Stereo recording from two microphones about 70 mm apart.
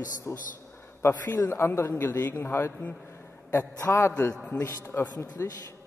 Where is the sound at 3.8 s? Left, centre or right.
Left.